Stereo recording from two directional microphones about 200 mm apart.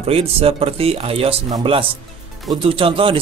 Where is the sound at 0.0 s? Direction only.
30° right (ahead or behind).